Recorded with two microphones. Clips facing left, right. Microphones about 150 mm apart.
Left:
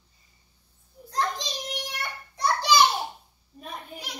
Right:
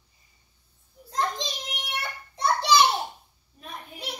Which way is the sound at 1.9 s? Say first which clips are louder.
Right 1 dB; 25° right (ahead or behind).